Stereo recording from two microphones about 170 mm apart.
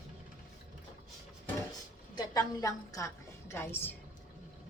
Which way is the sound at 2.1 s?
20° left (ahead or behind).